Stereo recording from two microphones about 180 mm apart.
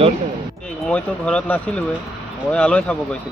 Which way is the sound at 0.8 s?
5° left (ahead or behind).